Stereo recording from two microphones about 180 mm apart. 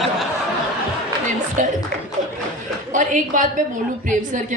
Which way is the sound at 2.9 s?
45° right (ahead or behind).